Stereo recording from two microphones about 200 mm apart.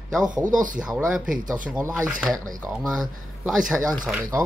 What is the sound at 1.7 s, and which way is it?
Speech, 15° right (ahead or behind).